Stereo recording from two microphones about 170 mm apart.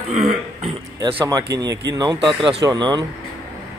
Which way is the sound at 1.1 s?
20° right (ahead or behind).